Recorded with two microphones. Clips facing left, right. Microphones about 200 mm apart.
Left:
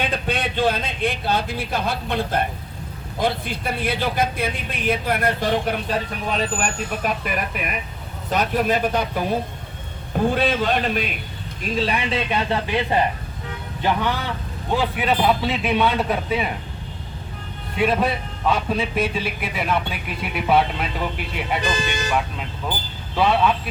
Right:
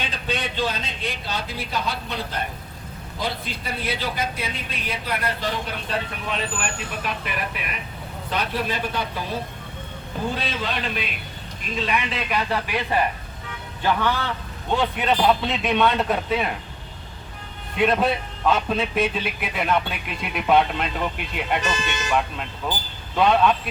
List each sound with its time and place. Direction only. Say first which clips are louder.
0.0 s a man's voice: left 4 dB; 55° left (ahead or behind)
6.2 s a man's voice: left 5 dB; 40° left (ahead or behind)
11.6 s a man's voice: left 3 dB; 35° left (ahead or behind); by 16.5 s centre (ahead or behind)
17.7 s a man's voice: even; 5° left (ahead or behind)
21.6 s speech: left 3 dB; 35° left (ahead or behind)
23.1 s a man's voice: even; 5° left (ahead or behind)